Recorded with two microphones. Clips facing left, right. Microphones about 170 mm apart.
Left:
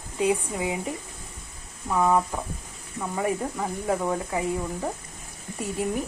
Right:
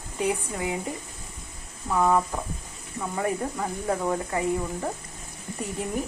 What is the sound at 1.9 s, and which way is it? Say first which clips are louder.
Speech: even; 5° left (ahead or behind).